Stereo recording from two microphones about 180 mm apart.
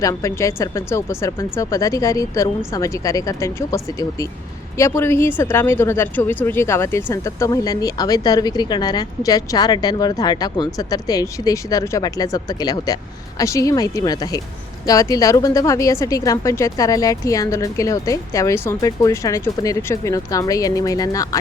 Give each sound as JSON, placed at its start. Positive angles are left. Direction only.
{"t": 0.0, "sound": "speech", "side_deg": 15}
{"t": 4.8, "sound": "speech", "side_deg": 15}